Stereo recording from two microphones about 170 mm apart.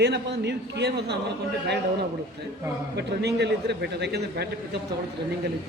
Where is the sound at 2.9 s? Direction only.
75° right (ahead or behind).